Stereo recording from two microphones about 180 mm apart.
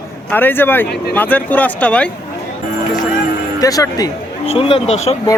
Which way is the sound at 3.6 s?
20° left (ahead or behind).